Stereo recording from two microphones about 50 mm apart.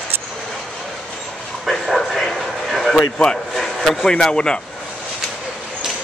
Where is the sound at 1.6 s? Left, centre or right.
Centre.